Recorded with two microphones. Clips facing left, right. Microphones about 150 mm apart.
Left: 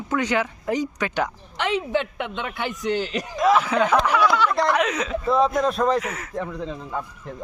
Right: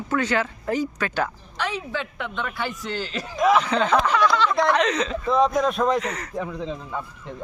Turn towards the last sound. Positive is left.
turn(degrees=0)  # may be behind; listen again after turning